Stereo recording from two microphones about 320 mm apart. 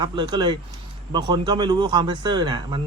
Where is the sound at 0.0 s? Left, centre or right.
Centre.